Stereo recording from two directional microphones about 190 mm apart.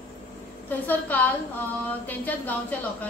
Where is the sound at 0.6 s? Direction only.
10° left (ahead or behind).